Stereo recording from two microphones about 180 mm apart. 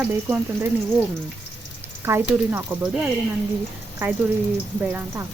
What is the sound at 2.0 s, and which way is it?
Speech, 15° right (ahead or behind).